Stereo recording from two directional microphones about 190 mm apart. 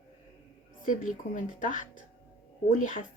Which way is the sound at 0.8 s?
45° left (ahead or behind).